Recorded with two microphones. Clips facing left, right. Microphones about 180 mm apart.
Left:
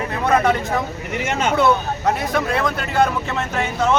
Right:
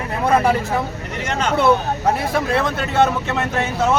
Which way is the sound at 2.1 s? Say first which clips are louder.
Right 1 dB; 30° right (ahead or behind).